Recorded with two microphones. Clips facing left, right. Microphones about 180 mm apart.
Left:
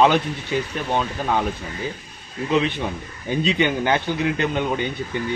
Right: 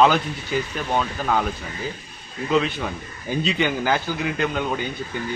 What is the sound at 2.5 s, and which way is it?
A man's voice, 20° left (ahead or behind).